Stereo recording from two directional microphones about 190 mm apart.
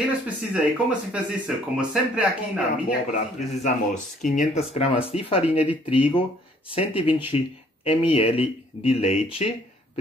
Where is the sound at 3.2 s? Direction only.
35° left (ahead or behind).